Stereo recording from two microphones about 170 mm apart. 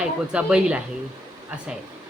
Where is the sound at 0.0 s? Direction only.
5° right (ahead or behind).